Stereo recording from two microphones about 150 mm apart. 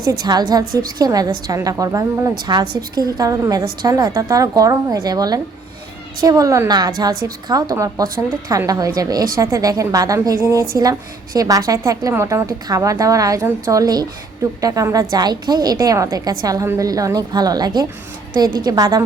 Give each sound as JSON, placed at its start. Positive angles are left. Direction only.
{"t": 0.1, "sound": "a woman's voice", "side_deg": -25}